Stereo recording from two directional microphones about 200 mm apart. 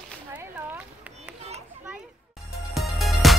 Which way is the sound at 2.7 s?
Centre (ahead or behind).